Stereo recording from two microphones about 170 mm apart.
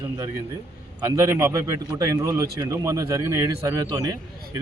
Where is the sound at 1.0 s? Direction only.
15° right (ahead or behind).